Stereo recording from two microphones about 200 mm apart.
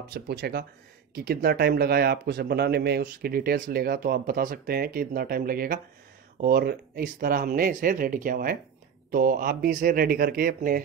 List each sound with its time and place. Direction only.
0.1 s speech: 50° right (ahead or behind)